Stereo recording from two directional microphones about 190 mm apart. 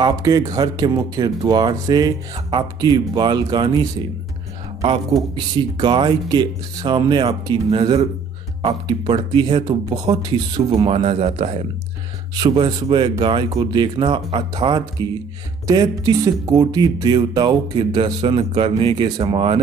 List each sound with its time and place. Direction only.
0.0 s speech: 20° right (ahead or behind)
5.3 s speech: 25° right (ahead or behind)
15.0 s speech: 15° left (ahead or behind)
15.6 s speech: 20° right (ahead or behind)